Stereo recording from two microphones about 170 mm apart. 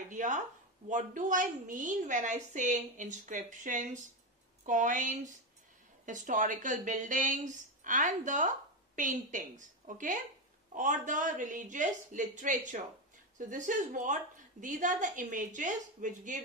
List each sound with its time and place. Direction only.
0.1 s a woman's voice: 45° right (ahead or behind)